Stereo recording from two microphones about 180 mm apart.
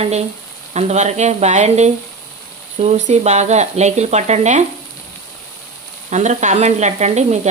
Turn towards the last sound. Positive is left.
turn(degrees=-40)  # may be behind; listen again after turning